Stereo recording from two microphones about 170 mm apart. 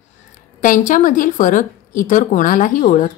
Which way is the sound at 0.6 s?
50° left (ahead or behind).